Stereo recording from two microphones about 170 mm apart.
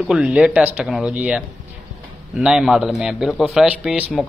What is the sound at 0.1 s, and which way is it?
A man's voice, 5° right (ahead or behind).